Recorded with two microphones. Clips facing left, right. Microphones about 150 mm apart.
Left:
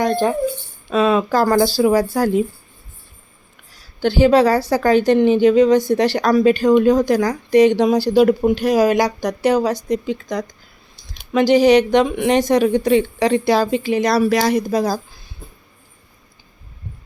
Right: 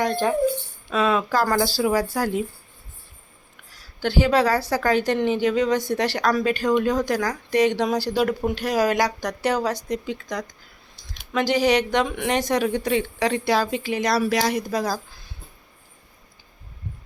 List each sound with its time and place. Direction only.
0.0 s a woman's voice: 35° left (ahead or behind)
4.0 s a woman's voice: 25° left (ahead or behind)
9.9 s a woman's voice: 25° left (ahead or behind); by 14.5 s 45° left (ahead or behind)
14.5 s a woman's voice: 25° left (ahead or behind)